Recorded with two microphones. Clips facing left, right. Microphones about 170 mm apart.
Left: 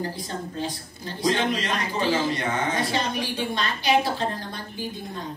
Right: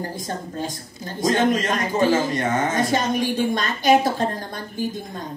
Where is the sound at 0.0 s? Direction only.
45° right (ahead or behind).